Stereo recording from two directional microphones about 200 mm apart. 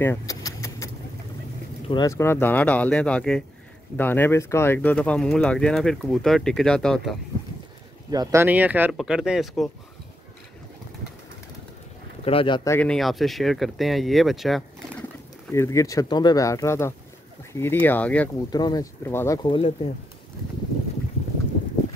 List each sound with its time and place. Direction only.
0.0 s vehicle: 15° left (ahead or behind)
1.9 s speech: 20° left (ahead or behind); by 7.2 s 5° left (ahead or behind)
8.1 s speech: 15° right (ahead or behind)
12.3 s speech: 25° left (ahead or behind)
12.7 s speech: 5° left (ahead or behind)
15.5 s speech: 15° left (ahead or behind)
18.5 s speech: 20° left (ahead or behind)